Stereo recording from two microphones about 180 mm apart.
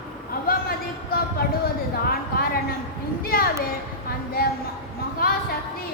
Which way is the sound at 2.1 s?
55° left (ahead or behind).